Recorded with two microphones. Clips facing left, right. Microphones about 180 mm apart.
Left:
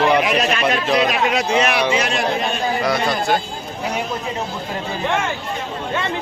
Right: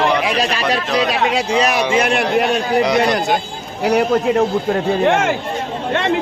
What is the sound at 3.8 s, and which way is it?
A man's voice, 80° right.